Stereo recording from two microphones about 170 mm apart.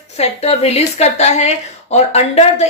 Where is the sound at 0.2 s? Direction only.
40° left (ahead or behind).